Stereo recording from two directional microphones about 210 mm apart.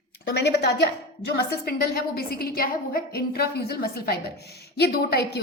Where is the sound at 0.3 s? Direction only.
55° left (ahead or behind).